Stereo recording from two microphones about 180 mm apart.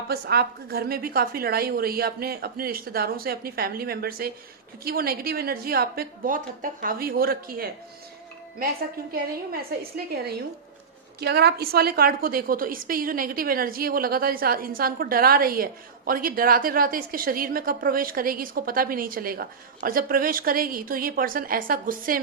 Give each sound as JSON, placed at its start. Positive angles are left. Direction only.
{"t": 0.1, "sound": "a woman's voice", "side_deg": -60}
{"t": 9.1, "sound": "a woman's voice", "side_deg": -55}
{"t": 11.2, "sound": "a woman's voice", "side_deg": -65}